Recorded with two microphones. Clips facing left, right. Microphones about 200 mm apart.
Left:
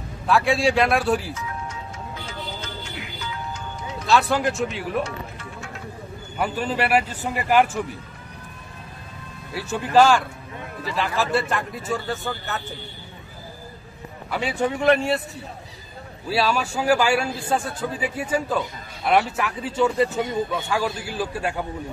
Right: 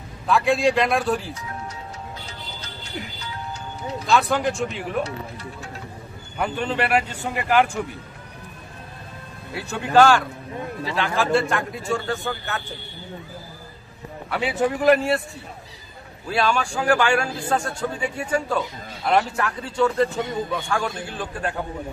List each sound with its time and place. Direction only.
0.3 s a man's voice: centre (ahead or behind)
2.2 s music: 35° right (ahead or behind)
4.1 s a man's voice: centre (ahead or behind)
5.0 s speech: 35° right (ahead or behind)
6.3 s a man's voice: 5° left (ahead or behind)
9.5 s a man's voice: centre (ahead or behind)
11.3 s a man's voice: 5° left (ahead or behind)
14.3 s a man's voice: centre (ahead or behind)
16.3 s speech: 5° left (ahead or behind)